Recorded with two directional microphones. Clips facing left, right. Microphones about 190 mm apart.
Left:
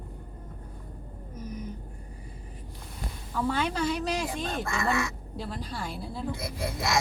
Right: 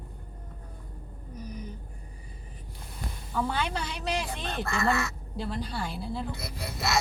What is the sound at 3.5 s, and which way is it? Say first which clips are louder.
A woman's voice: left 4 dB; centre (ahead or behind).